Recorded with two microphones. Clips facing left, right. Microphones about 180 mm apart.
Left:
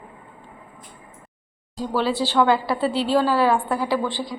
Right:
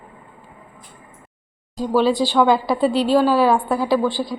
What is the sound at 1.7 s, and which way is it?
A woman's voice, 15° right (ahead or behind).